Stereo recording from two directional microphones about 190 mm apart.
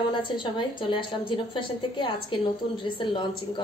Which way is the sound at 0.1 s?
25° left (ahead or behind).